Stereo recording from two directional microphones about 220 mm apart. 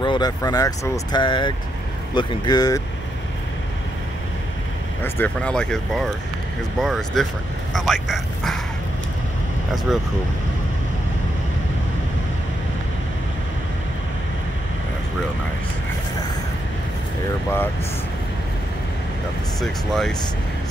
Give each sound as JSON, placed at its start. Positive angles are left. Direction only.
{"t": 0.0, "sound": "speech", "side_deg": 20}
{"t": 5.0, "sound": "speech", "side_deg": 10}
{"t": 9.9, "sound": "speech", "side_deg": 0}
{"t": 19.6, "sound": "speech", "side_deg": 0}